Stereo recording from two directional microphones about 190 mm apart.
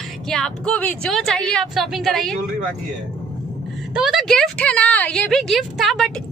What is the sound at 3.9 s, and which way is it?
A woman's voice, centre (ahead or behind).